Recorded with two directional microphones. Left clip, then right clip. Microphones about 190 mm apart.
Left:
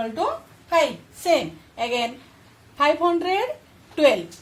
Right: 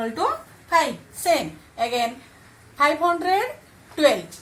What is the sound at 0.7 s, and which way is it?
A woman's voice, 45° left (ahead or behind).